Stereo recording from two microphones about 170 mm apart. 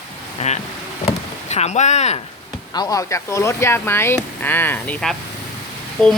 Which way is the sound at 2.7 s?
20° left (ahead or behind).